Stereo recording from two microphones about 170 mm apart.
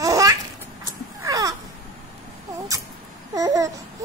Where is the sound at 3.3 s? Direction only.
20° right (ahead or behind).